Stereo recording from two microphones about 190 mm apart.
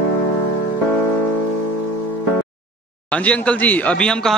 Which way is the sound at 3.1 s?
5° left (ahead or behind).